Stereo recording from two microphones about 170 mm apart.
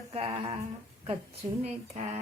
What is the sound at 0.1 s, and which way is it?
Speech, 35° right (ahead or behind).